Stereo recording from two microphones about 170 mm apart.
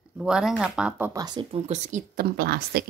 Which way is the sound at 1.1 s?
25° right (ahead or behind).